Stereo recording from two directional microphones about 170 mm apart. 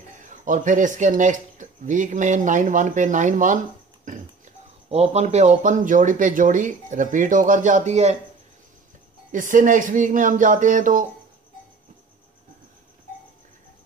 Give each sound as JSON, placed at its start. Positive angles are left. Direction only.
{"t": 0.2, "sound": "speech", "side_deg": -50}
{"t": 4.8, "sound": "speech", "side_deg": -35}
{"t": 9.3, "sound": "speech", "side_deg": -50}